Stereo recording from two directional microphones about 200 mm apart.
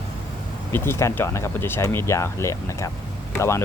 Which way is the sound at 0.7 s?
10° left (ahead or behind).